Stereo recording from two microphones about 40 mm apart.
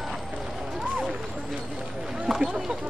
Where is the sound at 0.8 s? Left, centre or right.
Centre.